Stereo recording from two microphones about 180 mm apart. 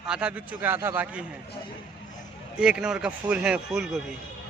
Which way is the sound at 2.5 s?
5° right (ahead or behind).